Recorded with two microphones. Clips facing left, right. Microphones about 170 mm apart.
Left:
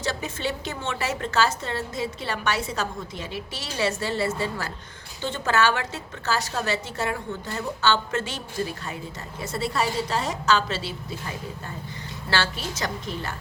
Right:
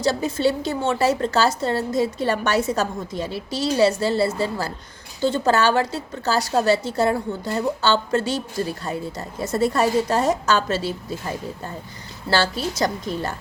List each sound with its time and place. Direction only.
0.0 s a woman's voice: 35° right (ahead or behind)